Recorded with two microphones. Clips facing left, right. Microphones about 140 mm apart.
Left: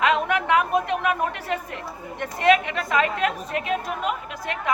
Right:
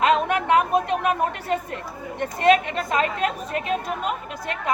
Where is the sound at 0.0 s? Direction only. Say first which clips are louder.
Right 2 dB; 35° right (ahead or behind).